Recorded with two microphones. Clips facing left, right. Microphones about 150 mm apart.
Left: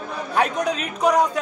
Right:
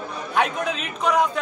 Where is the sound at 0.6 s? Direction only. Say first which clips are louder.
Left 4 dB; 40° left (ahead or behind).